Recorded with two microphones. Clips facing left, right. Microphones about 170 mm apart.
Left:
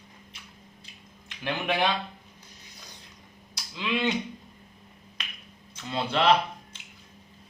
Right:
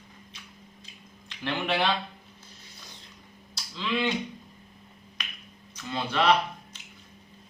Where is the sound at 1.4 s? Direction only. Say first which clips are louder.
Even; 15° left (ahead or behind).